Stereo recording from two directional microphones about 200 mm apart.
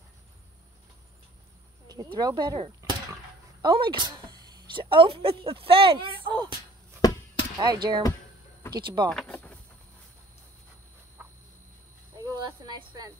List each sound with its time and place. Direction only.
2.1 s speech: 20° right (ahead or behind)
7.5 s speech: 20° right (ahead or behind)
9.1 s vehicle: 5° left (ahead or behind)
12.2 s a sound: 20° right (ahead or behind)